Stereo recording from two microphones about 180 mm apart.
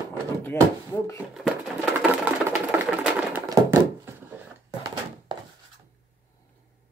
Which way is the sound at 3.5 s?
15° right (ahead or behind).